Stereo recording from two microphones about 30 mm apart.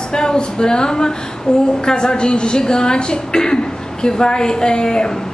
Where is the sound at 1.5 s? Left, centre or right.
Left.